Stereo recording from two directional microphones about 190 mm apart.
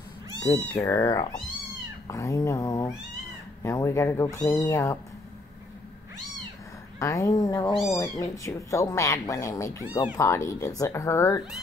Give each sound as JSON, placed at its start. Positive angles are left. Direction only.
{"t": 0.7, "sound": "speech", "side_deg": 10}
{"t": 7.0, "sound": "speech", "side_deg": 15}